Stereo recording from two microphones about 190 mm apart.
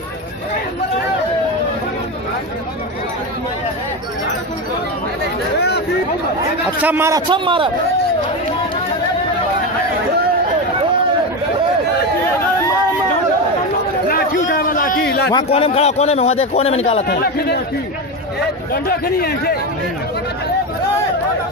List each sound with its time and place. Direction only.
6.8 s a man's voice: 10° right (ahead or behind); by 7.7 s 25° right (ahead or behind)
14.0 s a sound: 50° left (ahead or behind)
15.5 s a man's voice: 30° left (ahead or behind)
17.1 s speech: 60° left (ahead or behind)
18.7 s a man's voice: 55° left (ahead or behind)